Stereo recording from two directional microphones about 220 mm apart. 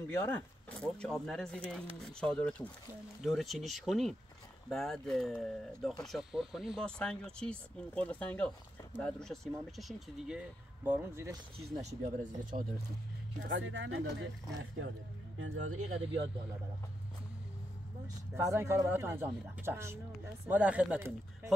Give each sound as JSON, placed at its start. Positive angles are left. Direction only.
{"t": 0.0, "sound": "speech", "side_deg": 10}
{"t": 11.6, "sound": "speech", "side_deg": -30}
{"t": 13.4, "sound": "speech", "side_deg": -60}
{"t": 18.0, "sound": "speech", "side_deg": -10}